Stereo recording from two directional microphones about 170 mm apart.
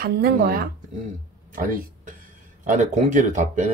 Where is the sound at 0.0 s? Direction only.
65° right (ahead or behind).